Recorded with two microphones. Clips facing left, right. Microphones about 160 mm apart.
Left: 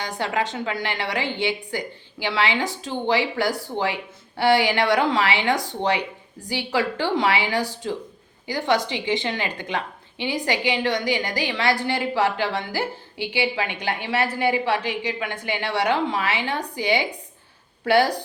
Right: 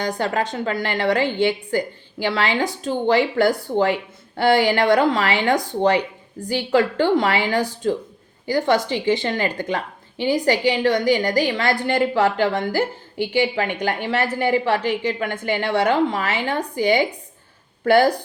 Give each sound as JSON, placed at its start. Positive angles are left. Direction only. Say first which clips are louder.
{"t": 0.0, "sound": "a woman's voice", "louder": "right 3 dB", "side_deg": -45}